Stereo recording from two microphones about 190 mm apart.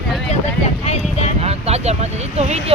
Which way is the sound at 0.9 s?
35° left (ahead or behind).